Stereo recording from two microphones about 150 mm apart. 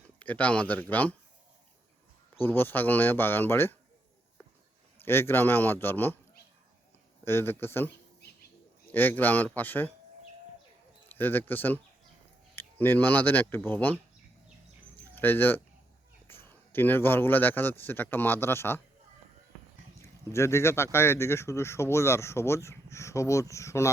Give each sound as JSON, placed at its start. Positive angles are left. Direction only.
{"t": 0.2, "sound": "speech", "side_deg": 10}
{"t": 2.4, "sound": "speech", "side_deg": 15}
{"t": 5.0, "sound": "speech", "side_deg": 15}
{"t": 7.3, "sound": "speech", "side_deg": 15}
{"t": 8.9, "sound": "speech", "side_deg": 10}
{"t": 11.1, "sound": "speech", "side_deg": 15}
{"t": 15.1, "sound": "a man's voice", "side_deg": 15}
{"t": 20.0, "sound": "speech", "side_deg": 20}